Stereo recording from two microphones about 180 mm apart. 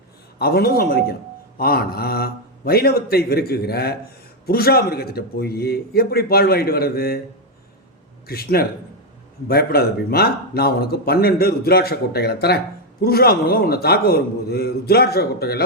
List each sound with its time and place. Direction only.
0.3 s speech: 60° left (ahead or behind)
8.3 s speech: 60° left (ahead or behind)